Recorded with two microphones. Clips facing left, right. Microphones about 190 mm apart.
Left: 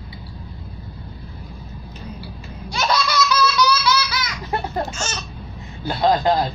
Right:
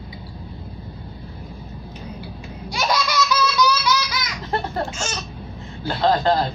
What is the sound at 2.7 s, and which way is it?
Laughter, 15° right (ahead or behind).